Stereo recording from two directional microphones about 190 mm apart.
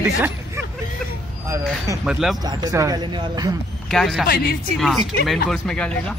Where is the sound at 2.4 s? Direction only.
20° right (ahead or behind).